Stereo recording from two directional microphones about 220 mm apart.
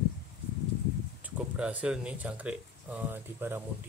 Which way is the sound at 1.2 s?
5° right (ahead or behind).